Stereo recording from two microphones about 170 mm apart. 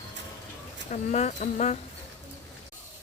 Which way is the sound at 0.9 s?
45° left (ahead or behind).